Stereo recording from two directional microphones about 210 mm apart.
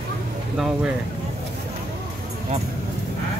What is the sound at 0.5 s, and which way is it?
Speech, centre (ahead or behind).